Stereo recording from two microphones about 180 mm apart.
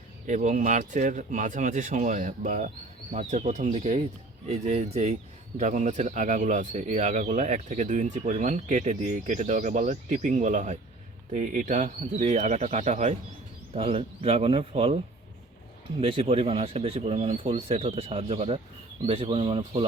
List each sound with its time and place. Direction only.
0.3 s speech: 45° right (ahead or behind)
16.0 s speech: 30° right (ahead or behind)